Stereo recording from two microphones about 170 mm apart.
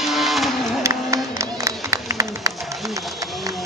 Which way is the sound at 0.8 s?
20° right (ahead or behind).